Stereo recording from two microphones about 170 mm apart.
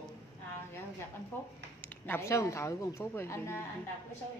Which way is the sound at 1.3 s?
10° left (ahead or behind).